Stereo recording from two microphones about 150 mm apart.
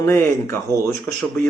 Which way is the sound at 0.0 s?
15° left (ahead or behind).